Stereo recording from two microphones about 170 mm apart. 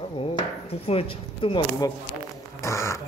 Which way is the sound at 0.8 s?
35° left (ahead or behind).